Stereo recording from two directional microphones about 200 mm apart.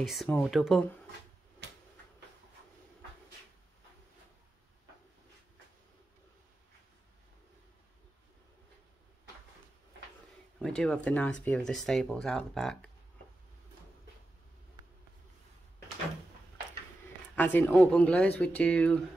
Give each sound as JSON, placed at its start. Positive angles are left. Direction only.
{"t": 0.0, "sound": "speech", "side_deg": 0}
{"t": 1.6, "sound": "finger snapping", "side_deg": -60}
{"t": 10.6, "sound": "speech", "side_deg": 0}
{"t": 17.4, "sound": "speech", "side_deg": 10}